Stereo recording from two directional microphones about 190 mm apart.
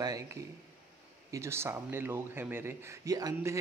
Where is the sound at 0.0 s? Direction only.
20° right (ahead or behind).